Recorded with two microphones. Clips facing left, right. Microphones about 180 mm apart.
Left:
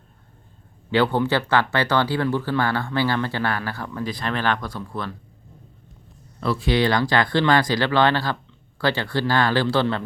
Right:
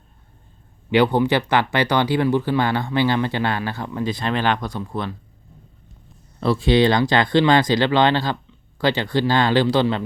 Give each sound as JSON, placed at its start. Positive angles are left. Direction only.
{"t": 0.9, "sound": "speech", "side_deg": -15}
{"t": 6.4, "sound": "speech", "side_deg": -25}